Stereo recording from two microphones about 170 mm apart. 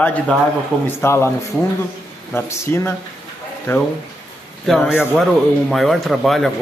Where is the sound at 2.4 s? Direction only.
15° left (ahead or behind).